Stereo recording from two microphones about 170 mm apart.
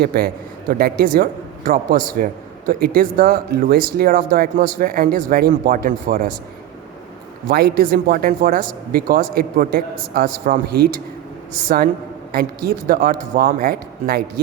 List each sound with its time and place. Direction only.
0.0 s speech: 60° right (ahead or behind)
7.4 s speech: 60° right (ahead or behind)
12.3 s speech: 60° right (ahead or behind)